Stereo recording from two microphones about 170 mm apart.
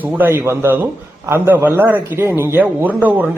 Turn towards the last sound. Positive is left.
turn(degrees=-10)  # may be behind; listen again after turning